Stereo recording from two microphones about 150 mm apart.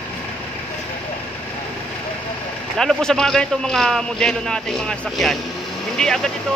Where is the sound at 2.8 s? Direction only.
5° left (ahead or behind).